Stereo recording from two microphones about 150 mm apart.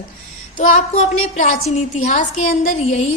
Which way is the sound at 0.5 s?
50° left (ahead or behind).